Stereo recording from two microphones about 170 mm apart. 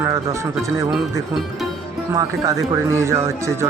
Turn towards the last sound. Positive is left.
turn(degrees=-15)  # may be behind; listen again after turning